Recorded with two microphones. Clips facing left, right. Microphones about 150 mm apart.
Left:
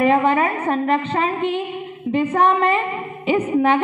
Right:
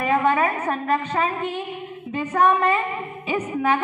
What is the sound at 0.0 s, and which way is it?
A woman's voice, 35° left (ahead or behind).